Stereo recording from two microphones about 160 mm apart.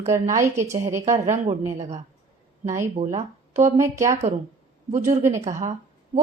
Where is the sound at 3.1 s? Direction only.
50° right (ahead or behind).